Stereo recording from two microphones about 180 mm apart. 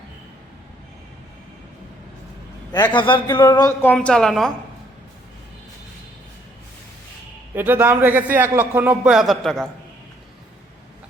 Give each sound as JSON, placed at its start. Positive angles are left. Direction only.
{"t": 2.7, "sound": "a sound", "side_deg": 25}
{"t": 3.8, "sound": "a woman's voice", "side_deg": 5}
{"t": 7.5, "sound": "a man's voice", "side_deg": -10}